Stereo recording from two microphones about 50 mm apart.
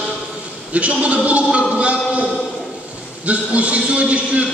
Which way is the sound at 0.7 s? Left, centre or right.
Right.